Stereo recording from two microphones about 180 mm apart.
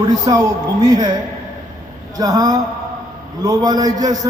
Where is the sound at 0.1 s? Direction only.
20° right (ahead or behind).